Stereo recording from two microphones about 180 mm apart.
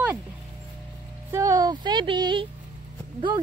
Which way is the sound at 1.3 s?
20° right (ahead or behind).